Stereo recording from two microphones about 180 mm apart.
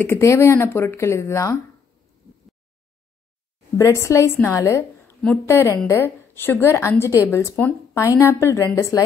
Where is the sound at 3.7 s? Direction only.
15° left (ahead or behind).